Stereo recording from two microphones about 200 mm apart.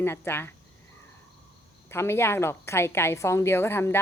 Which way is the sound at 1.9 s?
10° left (ahead or behind).